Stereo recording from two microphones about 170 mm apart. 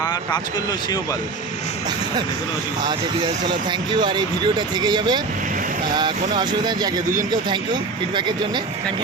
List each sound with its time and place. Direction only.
3.7 s speech: 25° right (ahead or behind)